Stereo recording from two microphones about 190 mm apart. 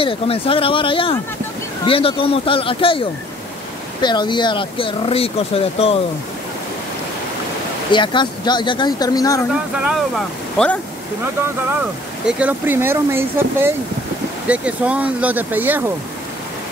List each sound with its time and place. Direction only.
0.0 s speech: 30° left (ahead or behind)
7.9 s speech: 25° left (ahead or behind)
9.5 s speech: 5° right (ahead or behind)
12.3 s speech: 5° right (ahead or behind)